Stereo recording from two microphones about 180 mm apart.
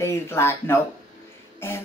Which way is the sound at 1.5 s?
15° left (ahead or behind).